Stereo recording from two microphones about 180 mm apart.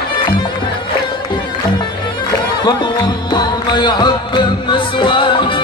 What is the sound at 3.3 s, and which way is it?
Music, 25° left (ahead or behind).